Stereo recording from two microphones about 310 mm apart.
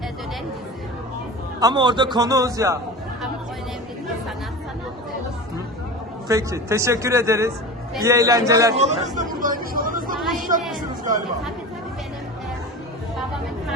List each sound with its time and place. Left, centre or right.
1.5 s speech: centre
6.2 s speech: centre
8.7 s a sound: right